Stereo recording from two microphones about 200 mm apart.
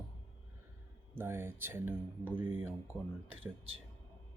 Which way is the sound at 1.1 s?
10° right (ahead or behind).